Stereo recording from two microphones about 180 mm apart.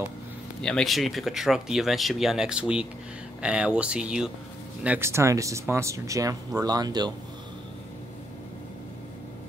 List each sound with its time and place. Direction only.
0.6 s speech: 5° left (ahead or behind); by 7.1 s 20° right (ahead or behind)